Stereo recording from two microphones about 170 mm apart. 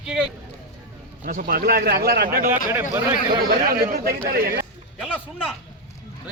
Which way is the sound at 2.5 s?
15° right (ahead or behind).